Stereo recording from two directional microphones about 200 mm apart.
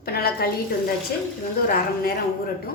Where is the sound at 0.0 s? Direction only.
50° left (ahead or behind).